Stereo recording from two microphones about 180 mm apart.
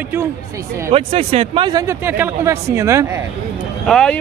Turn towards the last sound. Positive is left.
turn(degrees=5)  # may be behind; listen again after turning